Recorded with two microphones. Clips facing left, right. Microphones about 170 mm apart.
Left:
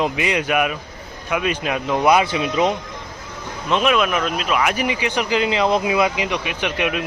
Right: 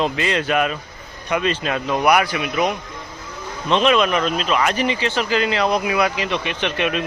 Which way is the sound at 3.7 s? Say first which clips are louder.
Right 2 dB; 5° left (ahead or behind).